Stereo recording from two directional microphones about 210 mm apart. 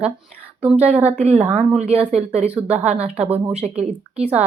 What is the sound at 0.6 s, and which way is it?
Speech, 5° right (ahead or behind).